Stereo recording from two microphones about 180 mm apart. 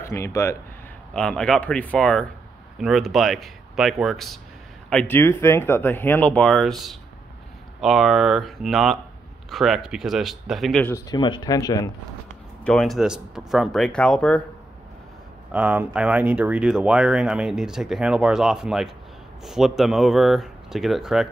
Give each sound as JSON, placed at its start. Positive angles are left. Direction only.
{"t": 0.0, "sound": "speech", "side_deg": 15}
{"t": 1.1, "sound": "speech", "side_deg": 5}
{"t": 11.1, "sound": "speech", "side_deg": 25}
{"t": 12.6, "sound": "speech", "side_deg": 5}
{"t": 15.5, "sound": "speech", "side_deg": -10}